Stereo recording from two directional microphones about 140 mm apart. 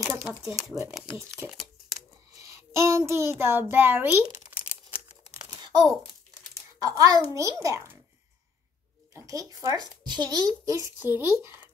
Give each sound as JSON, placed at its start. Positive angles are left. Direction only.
{"t": 0.1, "sound": "speech", "side_deg": -10}
{"t": 1.1, "sound": "a child's voice", "side_deg": -20}
{"t": 2.4, "sound": "child singing", "side_deg": -20}
{"t": 3.1, "sound": "a child's voice", "side_deg": -20}
{"t": 5.4, "sound": "a sound", "side_deg": -25}
{"t": 6.5, "sound": "a child's voice", "side_deg": -25}
{"t": 9.1, "sound": "a child's voice", "side_deg": -25}
{"t": 11.4, "sound": "a sound", "side_deg": -15}